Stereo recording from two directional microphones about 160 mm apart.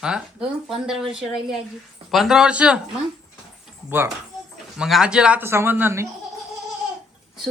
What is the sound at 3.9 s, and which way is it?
Speech, 10° right (ahead or behind).